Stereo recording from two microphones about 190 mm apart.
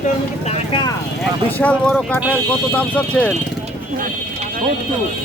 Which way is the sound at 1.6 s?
5° left (ahead or behind).